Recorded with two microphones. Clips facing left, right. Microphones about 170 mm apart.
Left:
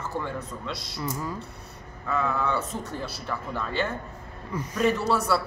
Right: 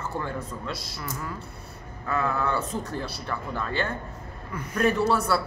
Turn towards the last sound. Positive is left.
turn(degrees=0)  # may be behind; listen again after turning